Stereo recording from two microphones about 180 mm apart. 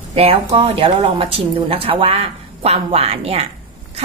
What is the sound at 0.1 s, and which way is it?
Speech, 35° right (ahead or behind).